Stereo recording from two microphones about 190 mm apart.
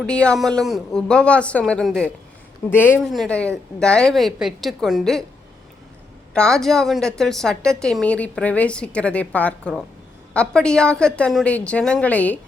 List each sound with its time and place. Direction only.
0.0 s a woman's voice: 5° left (ahead or behind)
6.3 s a woman's voice: 5° left (ahead or behind)